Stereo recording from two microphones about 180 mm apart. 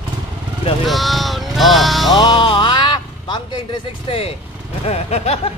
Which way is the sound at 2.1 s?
25° left (ahead or behind).